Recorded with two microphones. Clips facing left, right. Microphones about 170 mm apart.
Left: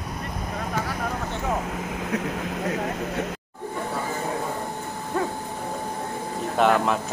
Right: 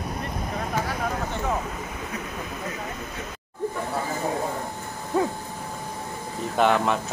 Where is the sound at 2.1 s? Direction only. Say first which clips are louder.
Left 6 dB; 85° left.